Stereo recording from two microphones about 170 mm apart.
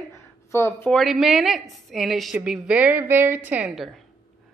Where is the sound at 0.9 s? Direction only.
Centre (ahead or behind).